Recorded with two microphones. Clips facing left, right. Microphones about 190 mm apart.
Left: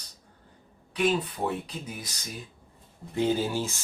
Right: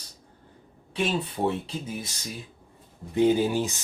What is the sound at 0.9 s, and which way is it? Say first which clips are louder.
Speech: left 1 dB; 25° right (ahead or behind).